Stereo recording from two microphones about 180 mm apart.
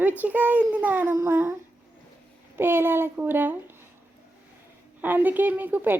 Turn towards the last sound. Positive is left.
turn(degrees=-10)  # may be behind; listen again after turning